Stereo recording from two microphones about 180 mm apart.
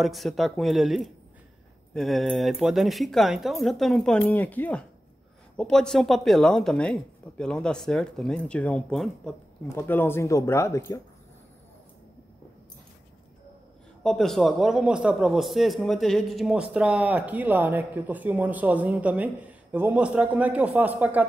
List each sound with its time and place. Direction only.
0.0 s speech: centre (ahead or behind); by 11.0 s 15° left (ahead or behind)
14.0 s speech: centre (ahead or behind)